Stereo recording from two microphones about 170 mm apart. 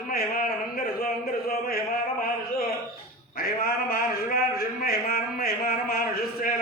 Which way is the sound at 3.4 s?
60° left (ahead or behind).